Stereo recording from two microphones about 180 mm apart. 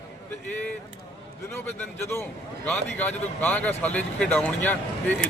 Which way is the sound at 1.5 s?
15° left (ahead or behind).